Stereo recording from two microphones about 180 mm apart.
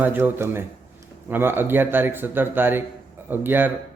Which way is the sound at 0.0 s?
10° right (ahead or behind).